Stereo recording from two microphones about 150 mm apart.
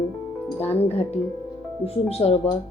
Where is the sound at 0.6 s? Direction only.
45° left (ahead or behind).